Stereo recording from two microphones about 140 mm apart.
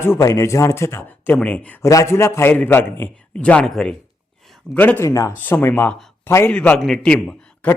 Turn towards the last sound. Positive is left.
turn(degrees=10)  # may be behind; listen again after turning